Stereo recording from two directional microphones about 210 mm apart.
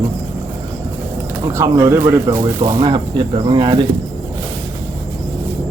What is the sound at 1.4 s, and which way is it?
Speech, 15° right (ahead or behind).